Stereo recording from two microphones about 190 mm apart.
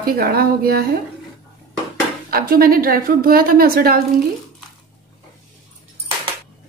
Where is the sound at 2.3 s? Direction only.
50° right (ahead or behind).